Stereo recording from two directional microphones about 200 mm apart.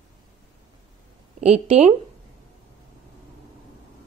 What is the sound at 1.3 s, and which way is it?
Speech, 35° right (ahead or behind).